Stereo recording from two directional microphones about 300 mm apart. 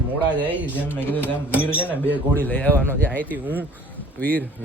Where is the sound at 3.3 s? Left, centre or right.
Centre.